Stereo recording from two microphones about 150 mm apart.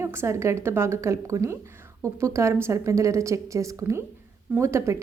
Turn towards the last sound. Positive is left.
turn(degrees=-20)  # may be behind; listen again after turning